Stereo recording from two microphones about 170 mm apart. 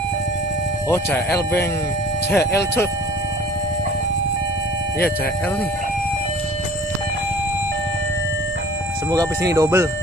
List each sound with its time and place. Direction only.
0.8 s speech: 15° left (ahead or behind)
2.3 s speech: 15° left (ahead or behind)
9.5 s speech: 15° right (ahead or behind)